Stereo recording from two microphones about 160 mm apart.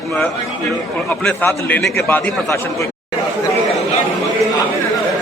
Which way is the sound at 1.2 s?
10° left (ahead or behind).